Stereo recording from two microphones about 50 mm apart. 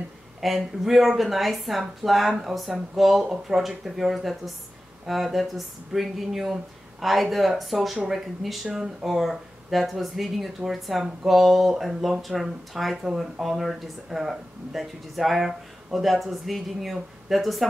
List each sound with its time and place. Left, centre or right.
0.4 s speech: centre